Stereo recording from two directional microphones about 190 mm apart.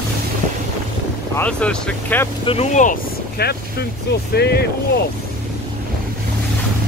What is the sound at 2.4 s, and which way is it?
Speech, 35° left (ahead or behind).